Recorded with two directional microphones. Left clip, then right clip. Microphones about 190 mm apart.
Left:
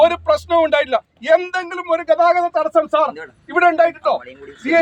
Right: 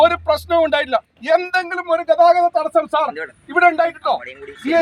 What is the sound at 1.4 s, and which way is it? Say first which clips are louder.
Speech: right 3 dB; 30° left (ahead or behind).